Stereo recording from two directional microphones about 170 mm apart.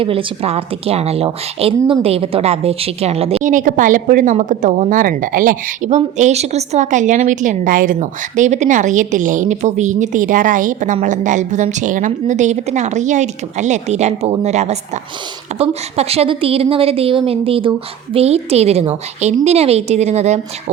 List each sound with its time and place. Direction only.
0.0 s a woman's voice: 30° right (ahead or behind)
3.5 s a woman's voice: 50° right (ahead or behind)